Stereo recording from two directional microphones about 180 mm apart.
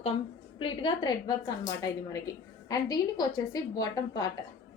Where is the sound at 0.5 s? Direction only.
30° left (ahead or behind).